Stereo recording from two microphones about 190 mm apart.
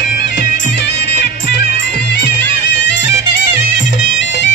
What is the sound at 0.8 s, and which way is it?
Music, 65° left (ahead or behind).